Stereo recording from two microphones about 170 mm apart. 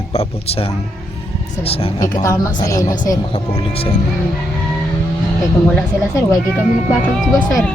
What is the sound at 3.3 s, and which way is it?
Speech, 35° left (ahead or behind).